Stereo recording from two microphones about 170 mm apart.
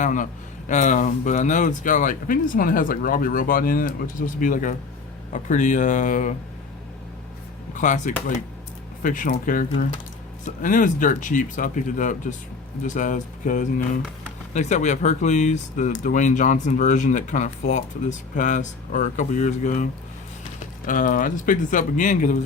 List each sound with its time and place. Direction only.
0.0 s speech: 50° left (ahead or behind)
7.8 s speech: 45° left (ahead or behind)